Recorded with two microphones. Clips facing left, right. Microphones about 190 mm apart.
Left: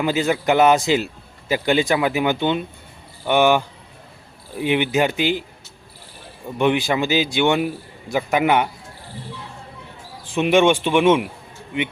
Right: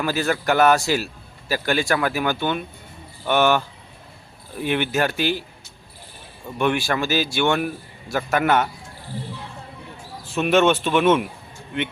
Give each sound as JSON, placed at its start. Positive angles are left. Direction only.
{"t": 0.0, "sound": "a man's voice", "side_deg": 20}
{"t": 6.6, "sound": "speech", "side_deg": 20}
{"t": 10.2, "sound": "speech", "side_deg": 15}